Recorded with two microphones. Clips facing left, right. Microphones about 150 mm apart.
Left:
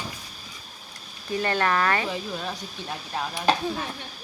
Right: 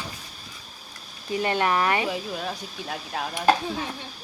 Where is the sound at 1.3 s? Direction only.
15° right (ahead or behind).